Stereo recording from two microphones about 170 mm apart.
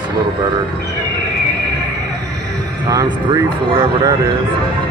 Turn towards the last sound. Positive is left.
turn(degrees=-25)  # may be behind; listen again after turning